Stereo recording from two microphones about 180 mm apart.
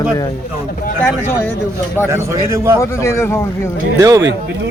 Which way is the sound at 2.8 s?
15° left (ahead or behind).